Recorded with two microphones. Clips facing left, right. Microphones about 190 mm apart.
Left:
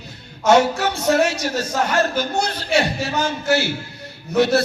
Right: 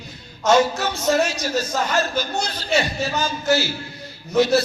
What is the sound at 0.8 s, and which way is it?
A man's voice, 65° left (ahead or behind).